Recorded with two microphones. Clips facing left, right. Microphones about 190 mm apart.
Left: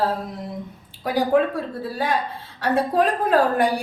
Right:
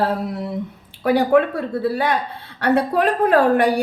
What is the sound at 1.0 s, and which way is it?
A woman's voice, 65° right (ahead or behind).